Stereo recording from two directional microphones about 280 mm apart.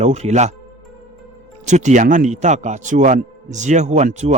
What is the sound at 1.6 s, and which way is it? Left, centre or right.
Speech, right.